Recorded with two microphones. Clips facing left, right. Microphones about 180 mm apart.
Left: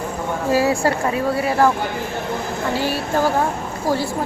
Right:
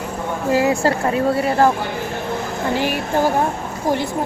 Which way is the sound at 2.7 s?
15° right (ahead or behind).